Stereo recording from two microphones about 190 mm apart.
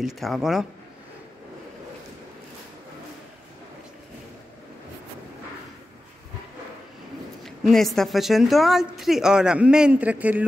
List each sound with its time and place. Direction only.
0.0 s a woman's voice: centre (ahead or behind)
7.4 s a woman's voice: centre (ahead or behind)